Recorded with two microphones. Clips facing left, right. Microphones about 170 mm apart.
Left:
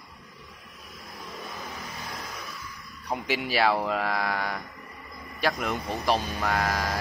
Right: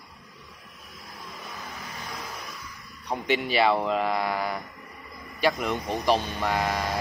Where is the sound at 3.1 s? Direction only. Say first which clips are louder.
Right 2 dB; 5° left (ahead or behind).